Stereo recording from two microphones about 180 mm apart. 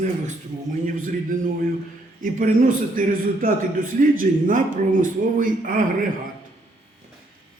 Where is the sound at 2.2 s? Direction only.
50° right (ahead or behind).